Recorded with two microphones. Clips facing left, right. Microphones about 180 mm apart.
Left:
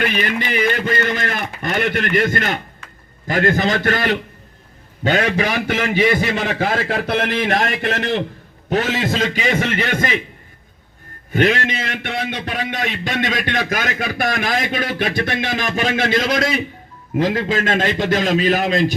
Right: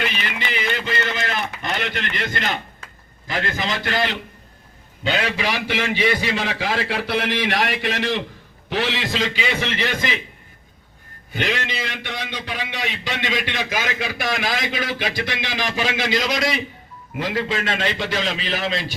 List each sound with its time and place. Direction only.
0.0 s a man's voice: 50° left (ahead or behind)
11.3 s a man's voice: 50° left (ahead or behind)